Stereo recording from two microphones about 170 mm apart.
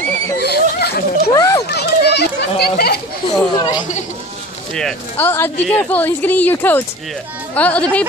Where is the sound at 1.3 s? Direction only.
20° left (ahead or behind).